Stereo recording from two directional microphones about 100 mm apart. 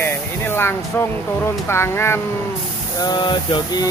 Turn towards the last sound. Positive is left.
turn(degrees=50)  # may be behind; listen again after turning